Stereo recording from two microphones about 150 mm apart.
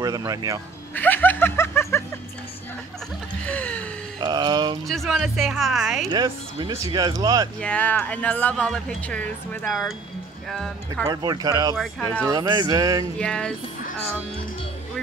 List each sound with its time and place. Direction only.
0.0 s speech: 25° right (ahead or behind)
0.9 s snicker: 10° left (ahead or behind)
3.4 s a sound: 10° left (ahead or behind)
4.2 s mantra: 30° right (ahead or behind)
4.8 s speech: centre (ahead or behind)
6.1 s speech: 30° right (ahead or behind)
7.6 s speech: 10° left (ahead or behind)
11.1 s speech: 25° right (ahead or behind)
11.7 s speech: 5° left (ahead or behind)
12.3 s speech: 25° right (ahead or behind)
13.2 s speech: 5° left (ahead or behind)